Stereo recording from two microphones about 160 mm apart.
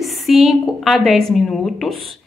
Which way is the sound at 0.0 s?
Centre (ahead or behind).